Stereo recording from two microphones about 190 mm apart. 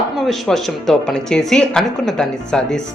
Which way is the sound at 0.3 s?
Centre (ahead or behind).